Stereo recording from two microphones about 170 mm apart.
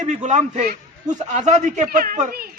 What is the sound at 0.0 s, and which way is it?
A man's voice, 45° right (ahead or behind).